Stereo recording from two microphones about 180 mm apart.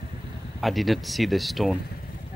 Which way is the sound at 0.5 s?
Centre (ahead or behind).